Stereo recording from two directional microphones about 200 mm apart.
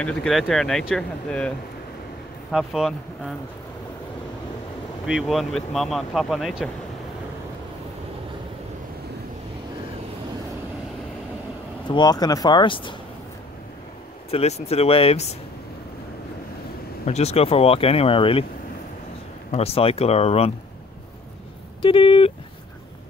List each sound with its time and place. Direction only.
0.0 s speech: centre (ahead or behind)
2.5 s speech: centre (ahead or behind)
5.0 s speech: centre (ahead or behind)
11.9 s speech: 20° left (ahead or behind)
14.3 s speech: 30° left (ahead or behind)
17.0 s speech: 30° left (ahead or behind)
19.5 s speech: 30° left (ahead or behind)
21.8 s speech: 25° left (ahead or behind)